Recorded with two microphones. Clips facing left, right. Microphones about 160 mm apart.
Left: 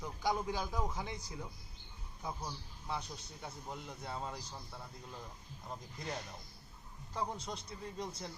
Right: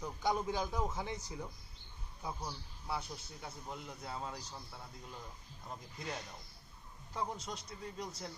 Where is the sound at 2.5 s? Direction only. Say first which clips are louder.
Even; 5° right (ahead or behind).